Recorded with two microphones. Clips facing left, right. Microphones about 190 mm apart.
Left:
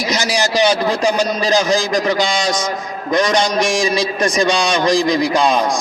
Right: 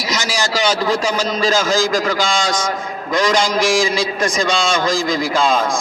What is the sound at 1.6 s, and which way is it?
Speech, 20° left (ahead or behind).